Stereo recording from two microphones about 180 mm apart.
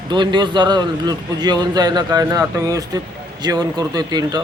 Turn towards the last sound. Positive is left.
turn(degrees=-20)  # may be behind; listen again after turning